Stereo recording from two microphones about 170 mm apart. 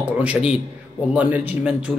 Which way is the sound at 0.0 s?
5° right (ahead or behind).